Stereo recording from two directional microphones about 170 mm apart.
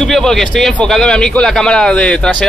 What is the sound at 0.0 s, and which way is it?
A man's voice, 5° left (ahead or behind).